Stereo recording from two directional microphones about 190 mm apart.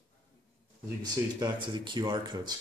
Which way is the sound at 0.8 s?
20° right (ahead or behind).